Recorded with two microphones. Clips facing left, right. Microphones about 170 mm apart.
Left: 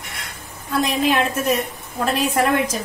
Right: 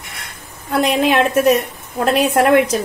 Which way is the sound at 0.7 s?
65° right (ahead or behind).